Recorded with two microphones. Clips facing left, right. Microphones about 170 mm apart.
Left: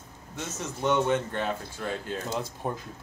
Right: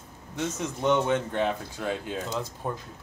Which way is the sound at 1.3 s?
10° right (ahead or behind).